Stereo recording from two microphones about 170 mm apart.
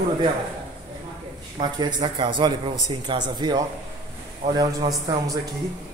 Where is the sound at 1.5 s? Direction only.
25° right (ahead or behind).